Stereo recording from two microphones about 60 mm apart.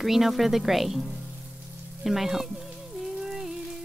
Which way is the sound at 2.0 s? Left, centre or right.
Centre.